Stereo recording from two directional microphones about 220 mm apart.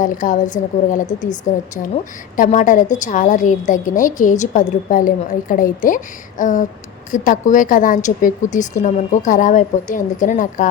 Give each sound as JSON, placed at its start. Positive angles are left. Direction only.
{"t": 0.0, "sound": "a woman's voice", "side_deg": 35}
{"t": 2.3, "sound": "a woman's voice", "side_deg": 35}